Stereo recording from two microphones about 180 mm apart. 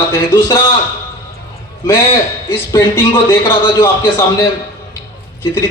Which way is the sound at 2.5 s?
15° left (ahead or behind).